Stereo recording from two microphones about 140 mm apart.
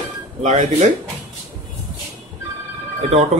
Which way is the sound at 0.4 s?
60° right (ahead or behind).